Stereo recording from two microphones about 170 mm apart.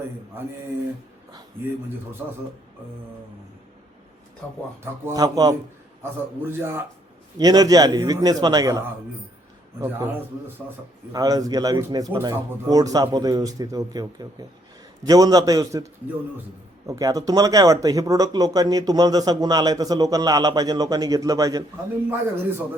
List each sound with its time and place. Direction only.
5.0 s a man's voice: 20° right (ahead or behind)
9.8 s a man's voice: 15° right (ahead or behind)